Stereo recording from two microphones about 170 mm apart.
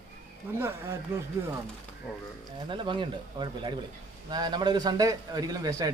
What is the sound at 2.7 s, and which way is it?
A man's voice, 30° right (ahead or behind).